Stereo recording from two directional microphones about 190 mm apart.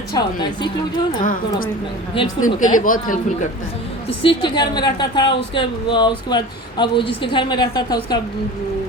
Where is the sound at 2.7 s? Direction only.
45° left (ahead or behind).